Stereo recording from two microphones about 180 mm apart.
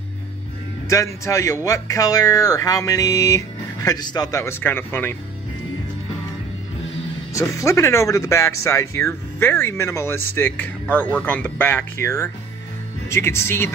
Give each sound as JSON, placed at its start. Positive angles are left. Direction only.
{"t": 0.8, "sound": "speech", "side_deg": 15}
{"t": 7.3, "sound": "speech", "side_deg": 15}